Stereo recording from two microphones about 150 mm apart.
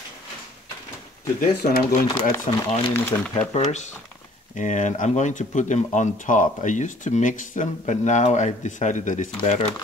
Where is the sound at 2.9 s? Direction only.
15° left (ahead or behind).